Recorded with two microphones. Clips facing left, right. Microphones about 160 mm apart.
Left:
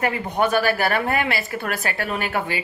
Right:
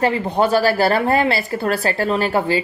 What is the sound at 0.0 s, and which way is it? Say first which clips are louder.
A woman's voice: right 4 dB; 30° right (ahead or behind).